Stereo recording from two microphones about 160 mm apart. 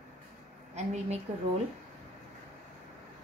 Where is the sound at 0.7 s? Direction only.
45° right (ahead or behind).